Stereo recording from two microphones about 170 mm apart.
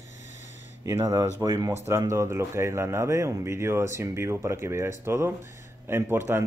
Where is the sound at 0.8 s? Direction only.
20° right (ahead or behind).